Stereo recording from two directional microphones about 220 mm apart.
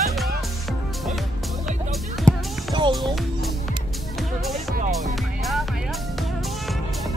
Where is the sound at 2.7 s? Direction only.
20° right (ahead or behind).